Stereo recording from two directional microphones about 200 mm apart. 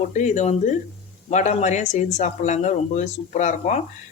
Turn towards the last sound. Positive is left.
turn(degrees=35)  # may be behind; listen again after turning